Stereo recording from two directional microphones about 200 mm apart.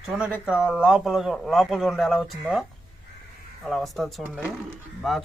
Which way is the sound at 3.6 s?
Centre (ahead or behind).